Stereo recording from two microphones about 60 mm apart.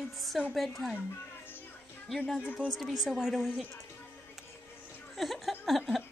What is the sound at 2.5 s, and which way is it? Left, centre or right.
Speech, centre.